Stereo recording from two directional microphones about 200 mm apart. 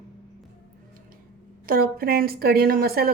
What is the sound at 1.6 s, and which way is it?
Speech, 45° right (ahead or behind).